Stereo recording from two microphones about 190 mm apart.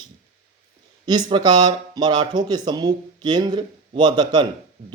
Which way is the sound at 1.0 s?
20° right (ahead or behind).